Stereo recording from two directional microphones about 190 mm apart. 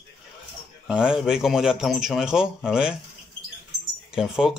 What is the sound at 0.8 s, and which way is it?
A man's voice, 5° right (ahead or behind).